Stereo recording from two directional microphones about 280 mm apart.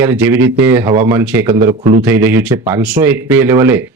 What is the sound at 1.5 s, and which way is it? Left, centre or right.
Speech, centre.